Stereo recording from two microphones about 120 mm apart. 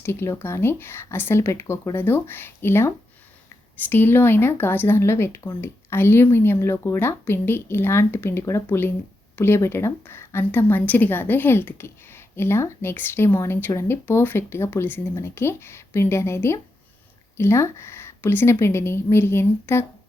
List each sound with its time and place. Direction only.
0.0 s a woman's voice: 20° left (ahead or behind)